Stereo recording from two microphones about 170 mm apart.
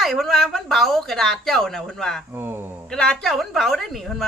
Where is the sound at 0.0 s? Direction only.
Centre (ahead or behind).